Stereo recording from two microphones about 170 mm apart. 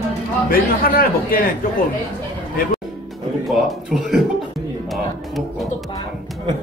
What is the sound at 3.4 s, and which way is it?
Speech, centre (ahead or behind).